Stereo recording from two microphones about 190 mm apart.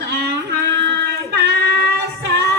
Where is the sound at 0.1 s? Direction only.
60° right (ahead or behind).